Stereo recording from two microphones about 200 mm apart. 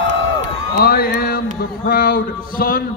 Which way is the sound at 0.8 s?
50° left (ahead or behind).